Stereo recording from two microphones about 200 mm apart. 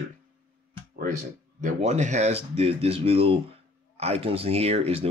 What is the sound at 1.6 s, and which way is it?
Speech, 35° right (ahead or behind).